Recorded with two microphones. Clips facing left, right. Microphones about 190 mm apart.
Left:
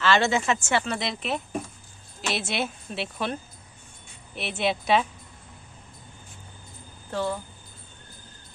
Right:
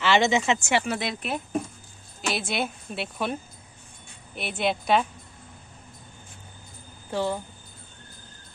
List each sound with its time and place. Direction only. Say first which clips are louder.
0.0 s speech: right 1 dB; 15° right (ahead or behind)
0.9 s a woman's voice: even; centre (ahead or behind)
4.4 s a woman's voice: even; centre (ahead or behind)
7.1 s speech: right 1 dB; 15° right (ahead or behind)